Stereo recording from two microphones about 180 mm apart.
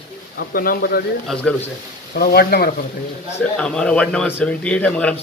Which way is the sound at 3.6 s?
5° left (ahead or behind).